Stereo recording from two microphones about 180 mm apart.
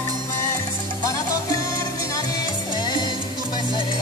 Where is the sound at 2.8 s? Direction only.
25° left (ahead or behind).